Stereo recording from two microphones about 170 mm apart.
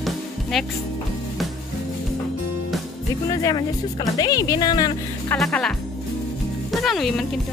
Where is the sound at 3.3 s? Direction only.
20° left (ahead or behind).